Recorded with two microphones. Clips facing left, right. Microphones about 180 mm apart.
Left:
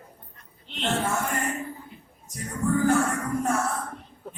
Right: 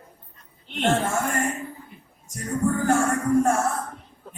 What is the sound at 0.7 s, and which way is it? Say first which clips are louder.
Speech: right 4 dB; 50° right (ahead or behind).